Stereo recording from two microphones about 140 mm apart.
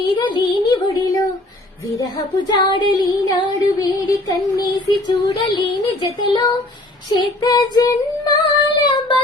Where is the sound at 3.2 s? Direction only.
30° left (ahead or behind).